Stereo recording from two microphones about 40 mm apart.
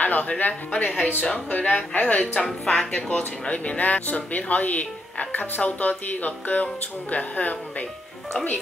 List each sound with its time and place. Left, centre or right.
0.0 s speech: left
2.6 s speech: centre
2.9 s speech: left